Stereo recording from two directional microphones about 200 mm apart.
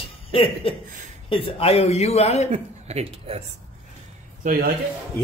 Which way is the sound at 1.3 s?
30° left (ahead or behind).